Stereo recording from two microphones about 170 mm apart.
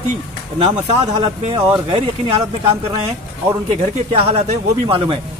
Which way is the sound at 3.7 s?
35° right (ahead or behind).